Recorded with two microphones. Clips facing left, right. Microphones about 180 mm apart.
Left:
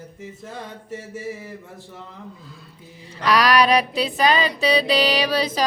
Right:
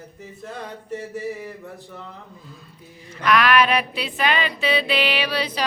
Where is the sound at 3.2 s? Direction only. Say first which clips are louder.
Left 1 dB; 35° left (ahead or behind).